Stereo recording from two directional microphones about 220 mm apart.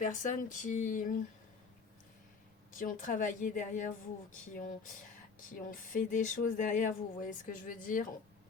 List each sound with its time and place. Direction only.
0.0 s speech: 35° left (ahead or behind)
2.7 s speech: 35° left (ahead or behind)